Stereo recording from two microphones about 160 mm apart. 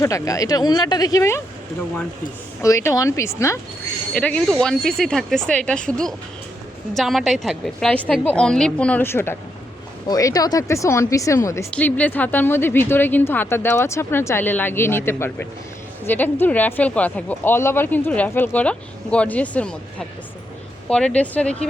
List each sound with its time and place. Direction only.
0.0 s speech: 20° left (ahead or behind)
2.6 s speech: 20° left (ahead or behind)
4.1 s a woman's voice: 10° left (ahead or behind)
6.9 s a woman's voice: centre (ahead or behind)